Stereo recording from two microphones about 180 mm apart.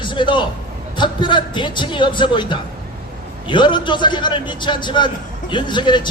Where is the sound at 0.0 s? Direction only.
25° left (ahead or behind).